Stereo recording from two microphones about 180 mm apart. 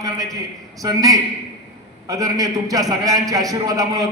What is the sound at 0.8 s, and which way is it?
A man's voice, 20° right (ahead or behind).